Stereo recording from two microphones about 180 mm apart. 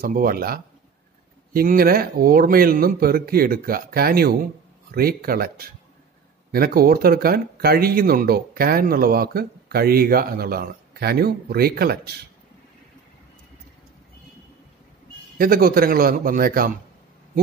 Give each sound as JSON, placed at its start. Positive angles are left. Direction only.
{"t": 0.0, "sound": "speech", "side_deg": -55}
{"t": 15.3, "sound": "a man's voice", "side_deg": -55}